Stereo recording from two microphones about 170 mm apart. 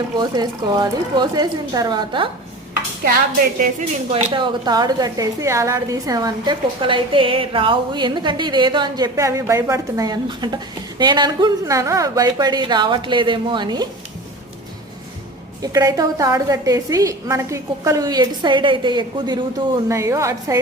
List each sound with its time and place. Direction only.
0.2 s a woman's voice: 25° right (ahead or behind)
3.0 s a woman's voice: 55° right (ahead or behind)
4.1 s a woman's voice: 30° right (ahead or behind)
15.6 s a woman's voice: 20° right (ahead or behind)